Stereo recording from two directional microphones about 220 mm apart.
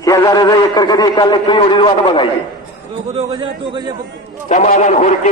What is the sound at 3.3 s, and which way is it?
Speech, 20° right (ahead or behind).